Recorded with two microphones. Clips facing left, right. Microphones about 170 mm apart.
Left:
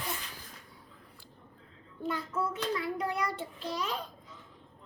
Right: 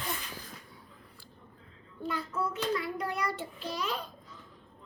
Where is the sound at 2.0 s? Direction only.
20° left (ahead or behind).